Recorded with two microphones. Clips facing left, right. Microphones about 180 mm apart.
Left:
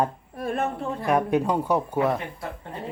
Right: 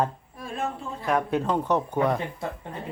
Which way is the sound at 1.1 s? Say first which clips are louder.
Left 2 dB; 15° left (ahead or behind).